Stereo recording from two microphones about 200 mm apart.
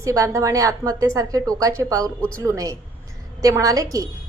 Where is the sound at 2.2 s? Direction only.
5° left (ahead or behind).